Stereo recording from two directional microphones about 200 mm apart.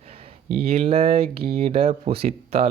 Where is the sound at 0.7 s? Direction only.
30° right (ahead or behind).